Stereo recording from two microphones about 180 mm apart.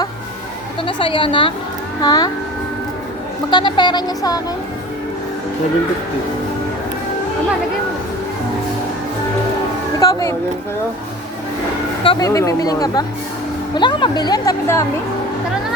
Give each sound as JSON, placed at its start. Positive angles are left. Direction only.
{"t": 0.9, "sound": "speech", "side_deg": 25}
{"t": 3.5, "sound": "speech", "side_deg": 25}
{"t": 10.0, "sound": "speech", "side_deg": 20}
{"t": 12.0, "sound": "speech", "side_deg": 20}